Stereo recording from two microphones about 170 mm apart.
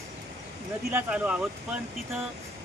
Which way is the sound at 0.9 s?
10° right (ahead or behind).